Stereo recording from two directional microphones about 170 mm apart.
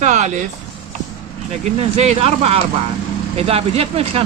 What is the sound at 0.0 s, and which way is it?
Speech, 45° right (ahead or behind).